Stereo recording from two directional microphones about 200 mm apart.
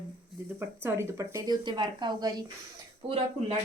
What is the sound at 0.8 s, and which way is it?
Speech, 15° right (ahead or behind).